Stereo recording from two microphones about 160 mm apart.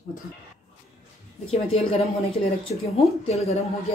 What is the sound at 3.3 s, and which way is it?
Speech, 40° left (ahead or behind).